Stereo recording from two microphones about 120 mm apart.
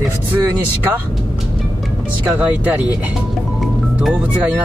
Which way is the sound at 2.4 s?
10° right (ahead or behind).